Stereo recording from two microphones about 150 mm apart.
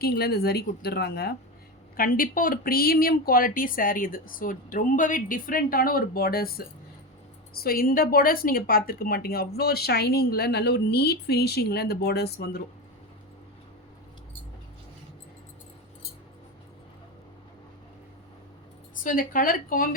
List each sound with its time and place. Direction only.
0.0 s a woman's voice: 90° left
2.0 s speech: 70° left (ahead or behind); by 6.5 s 85° left
7.6 s a woman's voice: 80° left
19.0 s speech: 70° left (ahead or behind)